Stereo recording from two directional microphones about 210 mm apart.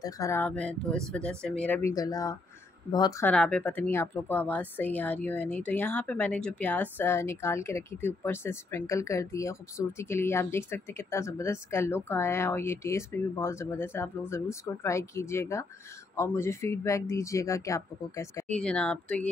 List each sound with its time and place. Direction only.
0.0 s speech: 15° left (ahead or behind)
3.3 s speech: 5° left (ahead or behind)